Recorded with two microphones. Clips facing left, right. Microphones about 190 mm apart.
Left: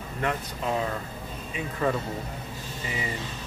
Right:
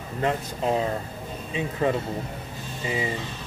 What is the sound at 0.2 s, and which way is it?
Speech, 30° right (ahead or behind).